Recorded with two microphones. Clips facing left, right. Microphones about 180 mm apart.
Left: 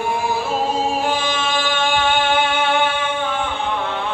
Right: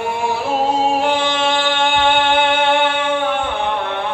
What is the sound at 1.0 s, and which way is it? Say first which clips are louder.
Music: right 4 dB; 65° right (ahead or behind).